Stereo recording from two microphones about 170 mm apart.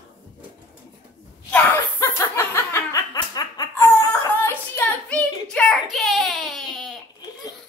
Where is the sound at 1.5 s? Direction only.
10° left (ahead or behind).